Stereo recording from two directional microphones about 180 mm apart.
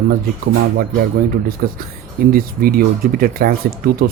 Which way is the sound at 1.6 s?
55° right (ahead or behind).